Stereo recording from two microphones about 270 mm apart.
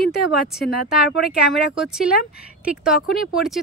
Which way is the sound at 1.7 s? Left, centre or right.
Centre.